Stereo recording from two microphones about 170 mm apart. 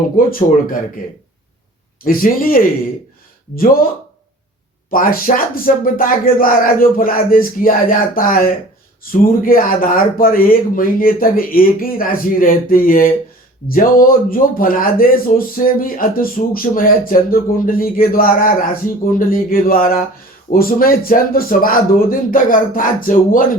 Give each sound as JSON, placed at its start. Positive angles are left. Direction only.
{"t": 0.3, "sound": "a man's voice", "side_deg": 55}
{"t": 2.0, "sound": "a man's voice", "side_deg": 55}
{"t": 4.9, "sound": "a man's voice", "side_deg": 55}